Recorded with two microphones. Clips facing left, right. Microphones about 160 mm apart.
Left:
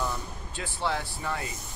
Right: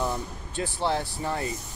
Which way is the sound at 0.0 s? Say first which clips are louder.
Right 3 dB; 30° right (ahead or behind).